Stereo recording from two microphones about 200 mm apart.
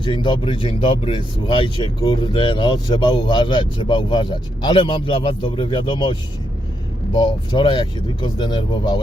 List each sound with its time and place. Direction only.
0.0 s speech: 25° left (ahead or behind)